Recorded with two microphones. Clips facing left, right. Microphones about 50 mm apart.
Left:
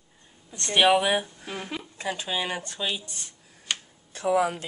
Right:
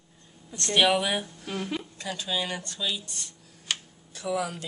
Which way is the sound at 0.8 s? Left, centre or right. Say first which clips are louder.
Left 4 dB; centre.